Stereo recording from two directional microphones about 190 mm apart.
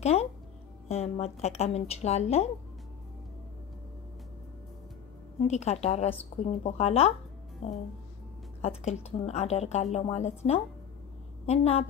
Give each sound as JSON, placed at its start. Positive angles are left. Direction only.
{"t": 0.0, "sound": "a woman's voice", "side_deg": 35}
{"t": 5.5, "sound": "a woman's voice", "side_deg": 35}
{"t": 8.5, "sound": "a woman's voice", "side_deg": 35}